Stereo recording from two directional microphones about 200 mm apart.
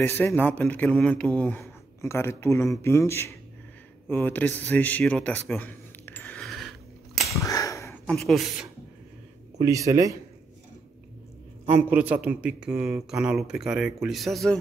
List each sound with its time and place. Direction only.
0.0 s speech: 10° left (ahead or behind)
7.4 s sniff: 15° left (ahead or behind)
8.1 s a man's voice: centre (ahead or behind)
9.6 s speech: 15° right (ahead or behind)
11.6 s a man's voice: 10° right (ahead or behind)